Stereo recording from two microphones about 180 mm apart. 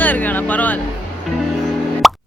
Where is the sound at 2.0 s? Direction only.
Centre (ahead or behind).